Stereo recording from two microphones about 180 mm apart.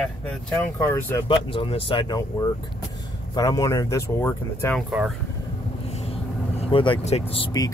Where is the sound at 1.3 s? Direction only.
30° left (ahead or behind).